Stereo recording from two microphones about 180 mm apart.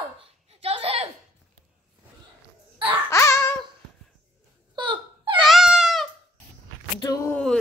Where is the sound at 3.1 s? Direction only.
15° left (ahead or behind).